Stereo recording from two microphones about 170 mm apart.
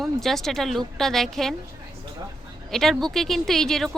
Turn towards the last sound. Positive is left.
turn(degrees=0)  # may be behind; listen again after turning